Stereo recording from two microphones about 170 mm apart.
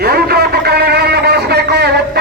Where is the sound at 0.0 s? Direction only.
65° right (ahead or behind).